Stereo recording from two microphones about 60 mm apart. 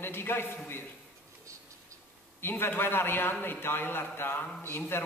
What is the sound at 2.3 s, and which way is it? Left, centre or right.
A man's voice, left.